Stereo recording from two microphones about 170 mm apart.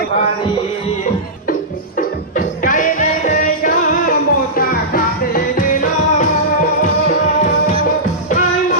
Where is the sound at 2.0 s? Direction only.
55° left (ahead or behind).